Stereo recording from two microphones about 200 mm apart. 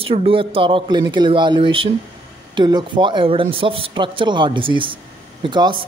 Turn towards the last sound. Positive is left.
turn(degrees=-20)  # may be behind; listen again after turning